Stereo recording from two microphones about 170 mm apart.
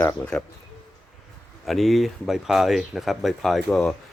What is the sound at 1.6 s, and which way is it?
Speech, centre (ahead or behind).